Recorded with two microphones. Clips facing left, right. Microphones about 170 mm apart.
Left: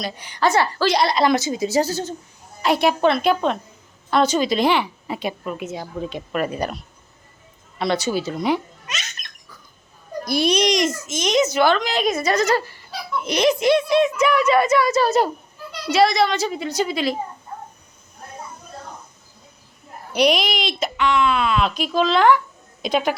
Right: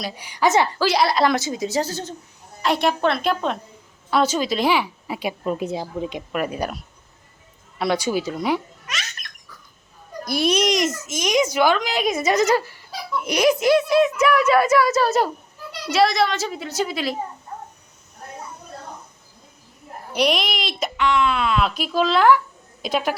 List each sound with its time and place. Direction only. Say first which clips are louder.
0.0 s a woman's voice: even; 10° right (ahead or behind)
0.9 s a woman's voice: left 1 dB; 5° right (ahead or behind)
5.4 s a woman's voice: right 4 dB; 35° right (ahead or behind)
6.1 s a woman's voice: left 1 dB; 10° right (ahead or behind)
8.9 s a sound: right 1 dB; 20° left (ahead or behind)
10.2 s a woman's voice: left 1 dB; centre (ahead or behind)
20.1 s a woman's voice: left 3 dB; centre (ahead or behind)